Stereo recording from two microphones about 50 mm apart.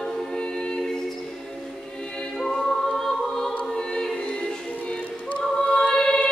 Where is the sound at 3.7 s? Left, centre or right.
Centre.